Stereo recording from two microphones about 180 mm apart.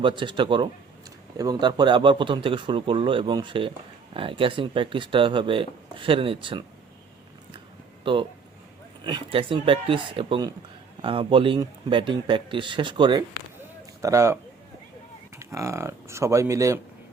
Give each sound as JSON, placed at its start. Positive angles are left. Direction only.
{"t": 0.0, "sound": "speech", "side_deg": -25}
{"t": 8.0, "sound": "speech", "side_deg": -30}
{"t": 15.4, "sound": "speech", "side_deg": -15}